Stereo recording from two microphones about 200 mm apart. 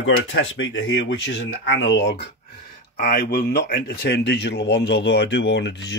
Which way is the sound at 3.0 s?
50° left (ahead or behind).